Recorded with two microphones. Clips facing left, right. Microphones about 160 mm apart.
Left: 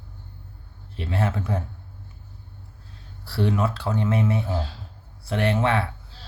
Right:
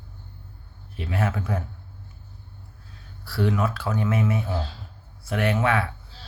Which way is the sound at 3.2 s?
30° left (ahead or behind).